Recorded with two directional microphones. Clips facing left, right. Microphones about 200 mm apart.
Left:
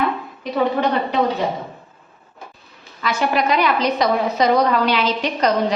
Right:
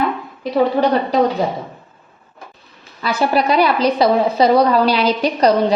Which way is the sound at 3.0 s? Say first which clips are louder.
Right 3 dB; 35° right (ahead or behind).